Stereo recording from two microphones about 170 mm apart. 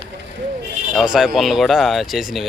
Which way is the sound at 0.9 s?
5° right (ahead or behind).